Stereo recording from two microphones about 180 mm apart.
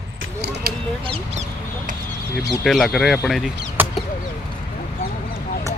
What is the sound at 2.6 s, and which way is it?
Speech, centre (ahead or behind).